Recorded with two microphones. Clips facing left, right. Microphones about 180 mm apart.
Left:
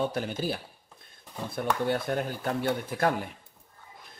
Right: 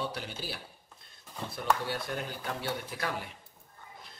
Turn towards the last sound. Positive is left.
turn(degrees=50)  # may be behind; listen again after turning